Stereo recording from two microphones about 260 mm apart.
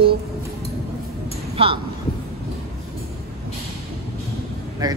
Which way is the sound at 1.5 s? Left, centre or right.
Right.